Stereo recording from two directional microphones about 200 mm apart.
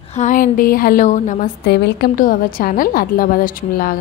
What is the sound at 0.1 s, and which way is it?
A woman's voice, 40° left (ahead or behind).